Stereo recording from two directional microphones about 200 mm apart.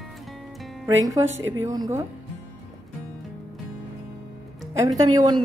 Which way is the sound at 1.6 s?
15° right (ahead or behind).